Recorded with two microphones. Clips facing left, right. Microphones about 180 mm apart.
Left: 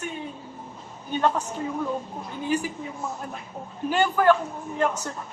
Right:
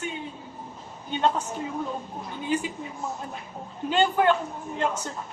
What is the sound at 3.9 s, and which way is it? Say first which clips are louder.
Speech: left 2 dB; 20° right (ahead or behind).